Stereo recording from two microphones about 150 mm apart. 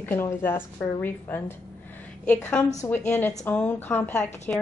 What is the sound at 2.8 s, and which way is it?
A woman's voice, 10° left (ahead or behind).